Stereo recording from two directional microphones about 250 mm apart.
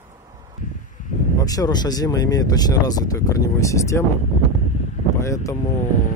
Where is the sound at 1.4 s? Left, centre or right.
Centre.